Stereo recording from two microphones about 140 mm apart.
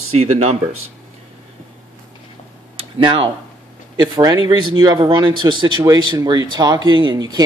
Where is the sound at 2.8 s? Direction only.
35° right (ahead or behind).